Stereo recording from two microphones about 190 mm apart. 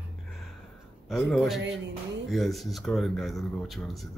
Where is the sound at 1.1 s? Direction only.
Centre (ahead or behind).